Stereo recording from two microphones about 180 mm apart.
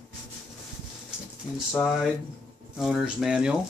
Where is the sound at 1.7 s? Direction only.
5° left (ahead or behind).